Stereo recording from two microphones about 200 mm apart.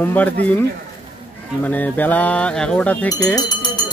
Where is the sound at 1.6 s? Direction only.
10° left (ahead or behind).